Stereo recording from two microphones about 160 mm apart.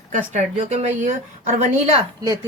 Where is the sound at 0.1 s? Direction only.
50° right (ahead or behind).